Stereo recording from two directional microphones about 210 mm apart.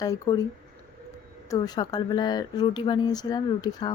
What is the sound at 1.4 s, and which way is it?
Speech, 20° left (ahead or behind).